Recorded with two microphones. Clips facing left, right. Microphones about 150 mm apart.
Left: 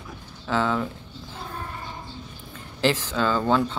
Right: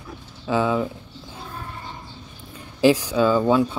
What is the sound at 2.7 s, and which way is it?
Speech, 15° right (ahead or behind).